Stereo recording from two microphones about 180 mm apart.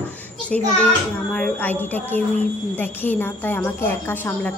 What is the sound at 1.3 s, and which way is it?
A child's voice, 10° left (ahead or behind).